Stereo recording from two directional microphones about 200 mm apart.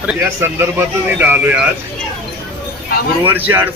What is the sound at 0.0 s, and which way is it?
Speech, 10° right (ahead or behind).